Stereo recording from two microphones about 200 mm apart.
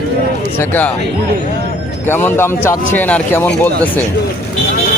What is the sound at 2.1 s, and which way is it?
Speech, 10° left (ahead or behind).